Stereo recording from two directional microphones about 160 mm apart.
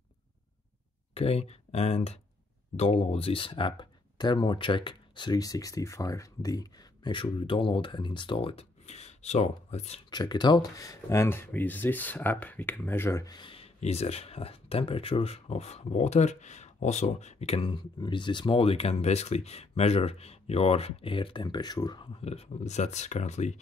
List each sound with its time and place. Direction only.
1.1 s speech: 40° left (ahead or behind)
10.0 s speech: 25° left (ahead or behind)
22.2 s speech: 40° left (ahead or behind)